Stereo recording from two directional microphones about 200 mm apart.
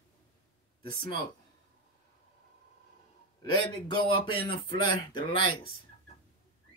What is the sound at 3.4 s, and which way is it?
Speech, 25° left (ahead or behind).